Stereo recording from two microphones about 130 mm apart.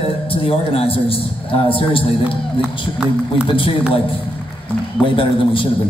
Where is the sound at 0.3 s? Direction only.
45° left (ahead or behind).